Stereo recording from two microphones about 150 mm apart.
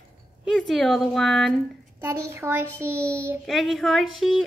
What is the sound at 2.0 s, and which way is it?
A child's voice, 15° right (ahead or behind).